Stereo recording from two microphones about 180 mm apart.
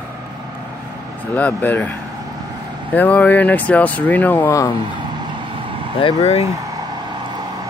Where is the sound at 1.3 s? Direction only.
10° left (ahead or behind).